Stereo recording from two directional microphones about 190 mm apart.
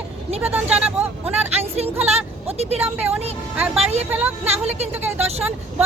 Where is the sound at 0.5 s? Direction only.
5° right (ahead or behind).